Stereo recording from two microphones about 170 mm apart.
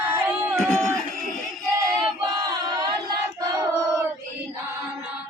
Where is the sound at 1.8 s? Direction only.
20° right (ahead or behind).